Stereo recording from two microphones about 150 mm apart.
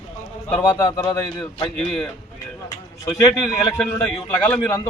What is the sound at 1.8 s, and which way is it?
Speech, 5° left (ahead or behind).